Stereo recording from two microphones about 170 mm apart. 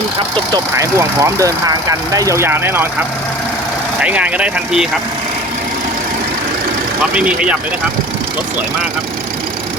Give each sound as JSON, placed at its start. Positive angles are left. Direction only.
{"t": 0.3, "sound": "speech", "side_deg": -20}
{"t": 4.0, "sound": "speech", "side_deg": -10}
{"t": 7.1, "sound": "speech", "side_deg": -5}